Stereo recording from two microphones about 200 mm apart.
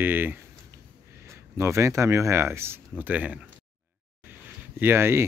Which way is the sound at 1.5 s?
15° right (ahead or behind).